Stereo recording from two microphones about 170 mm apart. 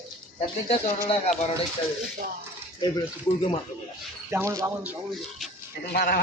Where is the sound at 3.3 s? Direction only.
30° left (ahead or behind).